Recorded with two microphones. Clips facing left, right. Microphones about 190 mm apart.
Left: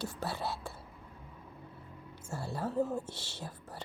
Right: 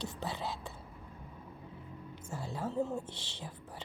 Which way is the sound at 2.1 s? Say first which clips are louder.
Left 2 dB; 10° left (ahead or behind).